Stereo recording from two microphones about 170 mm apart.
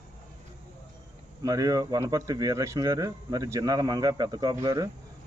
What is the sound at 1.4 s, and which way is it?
Speech, 20° right (ahead or behind).